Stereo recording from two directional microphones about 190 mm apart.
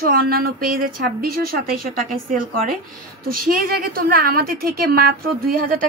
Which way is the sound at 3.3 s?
50° right (ahead or behind).